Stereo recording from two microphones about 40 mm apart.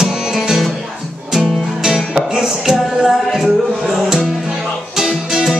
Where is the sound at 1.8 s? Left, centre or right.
Centre.